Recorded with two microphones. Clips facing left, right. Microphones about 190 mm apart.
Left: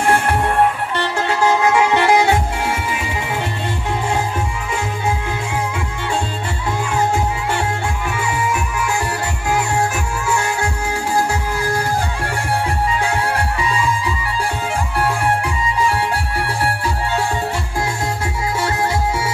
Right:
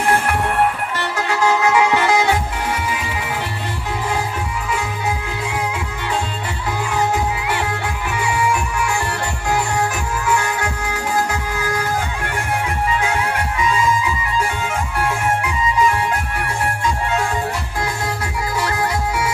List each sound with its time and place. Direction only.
1.1 s music: 30° left (ahead or behind)
10.2 s music: 30° left (ahead or behind)
13.0 s music: 35° left (ahead or behind)
18.6 s music: 25° left (ahead or behind)